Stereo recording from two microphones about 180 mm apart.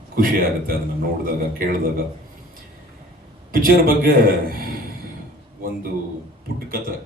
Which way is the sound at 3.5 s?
55° right (ahead or behind).